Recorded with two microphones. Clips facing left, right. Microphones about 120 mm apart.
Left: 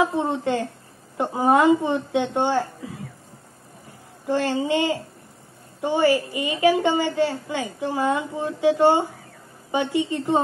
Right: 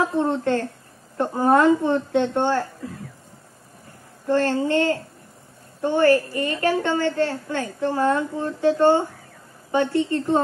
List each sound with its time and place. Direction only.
0.0 s a woman's voice: 10° left (ahead or behind)
4.3 s a woman's voice: 10° left (ahead or behind)